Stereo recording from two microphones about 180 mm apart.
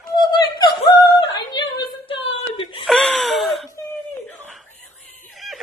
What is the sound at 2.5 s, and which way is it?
Whimper, 25° left (ahead or behind).